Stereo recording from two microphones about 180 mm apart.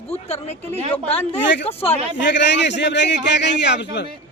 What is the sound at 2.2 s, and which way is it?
A man's voice, 80° left.